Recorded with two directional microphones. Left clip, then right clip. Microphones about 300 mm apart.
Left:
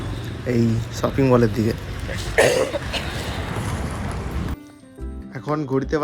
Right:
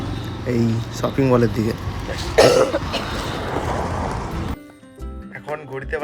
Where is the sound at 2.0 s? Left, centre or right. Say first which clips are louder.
Right 4 dB; right.